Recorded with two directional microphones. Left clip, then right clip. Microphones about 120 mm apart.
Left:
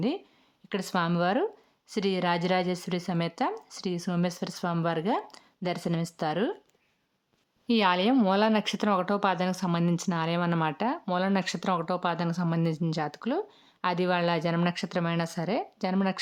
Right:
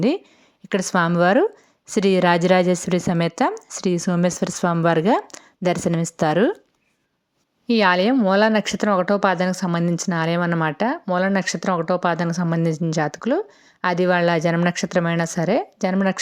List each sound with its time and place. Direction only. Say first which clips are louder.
0.7 s a woman's voice: right 9 dB; 40° right (ahead or behind)
7.7 s speech: right 7 dB; 35° right (ahead or behind)